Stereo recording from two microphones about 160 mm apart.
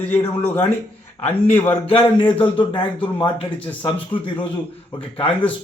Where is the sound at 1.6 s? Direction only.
35° left (ahead or behind).